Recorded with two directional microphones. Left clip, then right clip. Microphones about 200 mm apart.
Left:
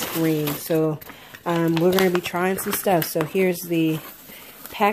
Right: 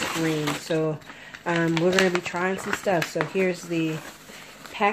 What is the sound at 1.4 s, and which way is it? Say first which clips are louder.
Speech: left 3 dB; 35° left (ahead or behind).